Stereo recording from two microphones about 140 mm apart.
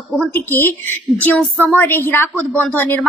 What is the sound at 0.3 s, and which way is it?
A woman's voice, 15° left (ahead or behind).